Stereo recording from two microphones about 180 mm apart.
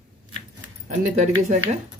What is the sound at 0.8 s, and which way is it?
Speech, 40° right (ahead or behind).